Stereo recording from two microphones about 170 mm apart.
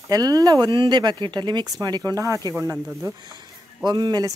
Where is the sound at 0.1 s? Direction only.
20° right (ahead or behind).